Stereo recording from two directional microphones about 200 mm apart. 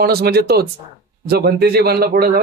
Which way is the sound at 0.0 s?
50° right (ahead or behind).